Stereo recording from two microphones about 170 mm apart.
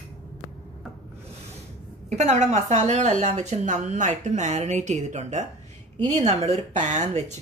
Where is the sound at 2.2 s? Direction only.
40° right (ahead or behind).